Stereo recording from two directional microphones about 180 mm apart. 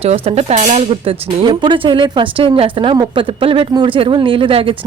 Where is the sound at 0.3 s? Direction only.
35° right (ahead or behind).